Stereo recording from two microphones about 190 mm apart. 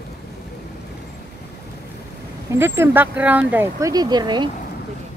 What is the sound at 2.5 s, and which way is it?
Speech, 15° right (ahead or behind).